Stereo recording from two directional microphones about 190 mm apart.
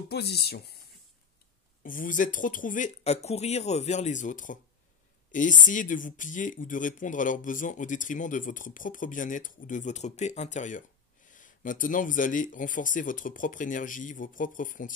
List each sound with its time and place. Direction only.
0.1 s speech: 60° left (ahead or behind)
1.8 s speech: 45° left (ahead or behind)